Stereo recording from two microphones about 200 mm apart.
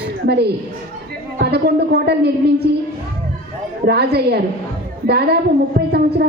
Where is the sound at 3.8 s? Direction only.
55° right (ahead or behind).